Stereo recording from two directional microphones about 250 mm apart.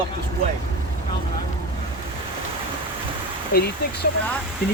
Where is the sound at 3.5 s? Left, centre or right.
Left.